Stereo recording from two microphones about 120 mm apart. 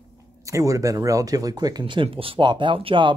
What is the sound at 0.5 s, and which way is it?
A woman's voice, 30° right (ahead or behind).